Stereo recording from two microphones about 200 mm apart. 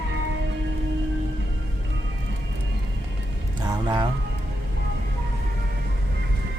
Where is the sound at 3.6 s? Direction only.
20° right (ahead or behind).